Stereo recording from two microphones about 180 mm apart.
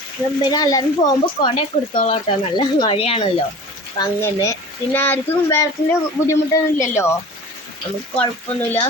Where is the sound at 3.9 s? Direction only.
20° left (ahead or behind).